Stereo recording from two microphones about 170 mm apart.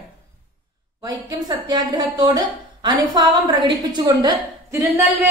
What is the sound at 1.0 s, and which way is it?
A woman's voice, 25° right (ahead or behind).